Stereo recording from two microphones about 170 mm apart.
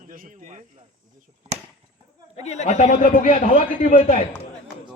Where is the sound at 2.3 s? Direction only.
40° left (ahead or behind).